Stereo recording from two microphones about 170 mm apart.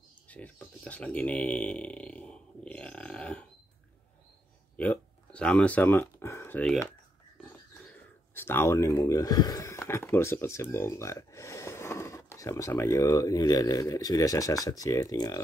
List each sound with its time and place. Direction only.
0.3 s speech: 10° left (ahead or behind)
4.7 s a sound: 5° left (ahead or behind)
8.4 s speech: 15° left (ahead or behind)